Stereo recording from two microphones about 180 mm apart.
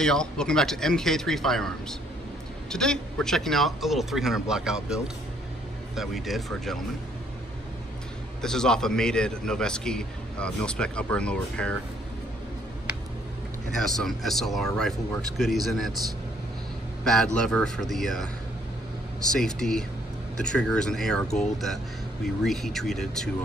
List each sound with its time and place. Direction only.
0.0 s a man's voice: 5° left (ahead or behind)
8.4 s a man's voice: 5° left (ahead or behind)
13.7 s a man's voice: centre (ahead or behind)
17.0 s a man's voice: 5° left (ahead or behind)
19.3 s a man's voice: 5° left (ahead or behind)